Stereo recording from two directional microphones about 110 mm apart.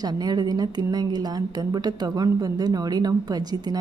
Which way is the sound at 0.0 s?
40° right (ahead or behind).